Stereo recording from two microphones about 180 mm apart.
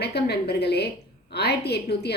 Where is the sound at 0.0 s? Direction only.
65° left (ahead or behind).